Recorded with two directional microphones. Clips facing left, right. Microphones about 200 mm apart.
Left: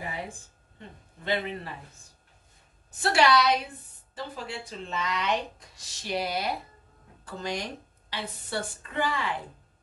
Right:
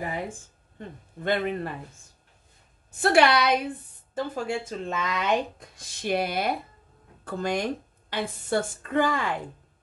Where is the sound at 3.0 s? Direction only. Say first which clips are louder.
Right 3 dB; 55° right (ahead or behind).